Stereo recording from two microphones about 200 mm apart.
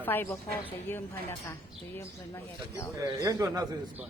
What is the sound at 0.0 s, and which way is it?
A woman's voice, 10° left (ahead or behind).